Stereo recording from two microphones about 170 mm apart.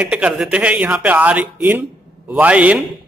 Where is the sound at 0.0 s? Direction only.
5° right (ahead or behind).